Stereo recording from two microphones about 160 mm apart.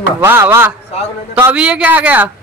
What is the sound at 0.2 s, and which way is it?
Speech, 15° right (ahead or behind).